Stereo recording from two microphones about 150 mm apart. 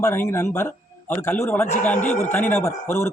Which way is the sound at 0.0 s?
15° left (ahead or behind).